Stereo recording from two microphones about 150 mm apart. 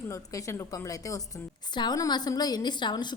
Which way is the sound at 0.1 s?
20° left (ahead or behind).